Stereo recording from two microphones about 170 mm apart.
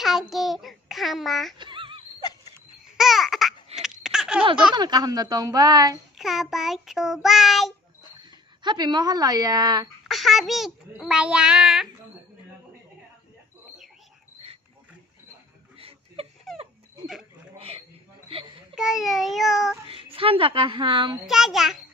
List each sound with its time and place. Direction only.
0.0 s a child's voice: centre (ahead or behind)
1.6 s wail: 30° right (ahead or behind)
3.0 s babbling: centre (ahead or behind)
3.7 s a sound: 5° right (ahead or behind)
4.7 s a woman's voice: 25° right (ahead or behind)
6.1 s a child's voice: centre (ahead or behind)
8.2 s speech: 25° right (ahead or behind)
10.0 s a child's voice: centre (ahead or behind)
16.5 s dog: centre (ahead or behind)
17.0 s a sound: 5° right (ahead or behind)
17.6 s a sound: 35° right (ahead or behind)
18.8 s a child's voice: centre (ahead or behind)
19.9 s a child's voice: 35° right (ahead or behind)
21.3 s a child's voice: centre (ahead or behind)